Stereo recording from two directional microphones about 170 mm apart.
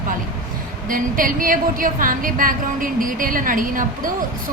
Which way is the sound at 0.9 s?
55° right (ahead or behind).